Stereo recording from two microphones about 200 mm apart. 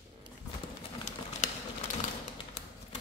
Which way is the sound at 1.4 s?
35° left (ahead or behind).